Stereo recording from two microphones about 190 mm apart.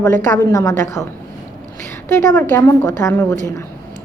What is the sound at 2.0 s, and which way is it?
A woman's voice, 15° left (ahead or behind).